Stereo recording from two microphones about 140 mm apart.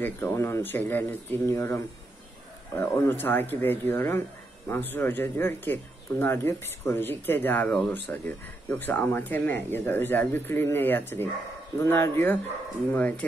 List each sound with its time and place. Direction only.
0.0 s speech: 15° left (ahead or behind)